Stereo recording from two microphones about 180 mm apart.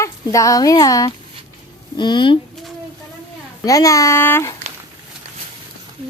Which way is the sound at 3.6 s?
20° left (ahead or behind).